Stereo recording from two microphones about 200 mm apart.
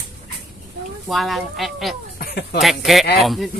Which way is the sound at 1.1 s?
Centre (ahead or behind).